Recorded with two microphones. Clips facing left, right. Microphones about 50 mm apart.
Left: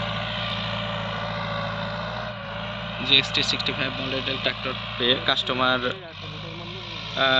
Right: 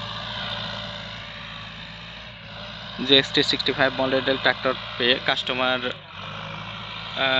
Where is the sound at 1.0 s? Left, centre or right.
Left.